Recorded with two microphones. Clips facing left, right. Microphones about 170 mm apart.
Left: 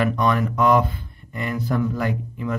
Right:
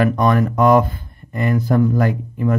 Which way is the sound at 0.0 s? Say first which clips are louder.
Right 5 dB; 45° right (ahead or behind).